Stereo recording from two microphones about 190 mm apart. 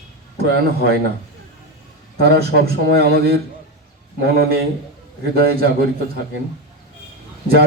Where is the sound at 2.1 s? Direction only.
55° right (ahead or behind).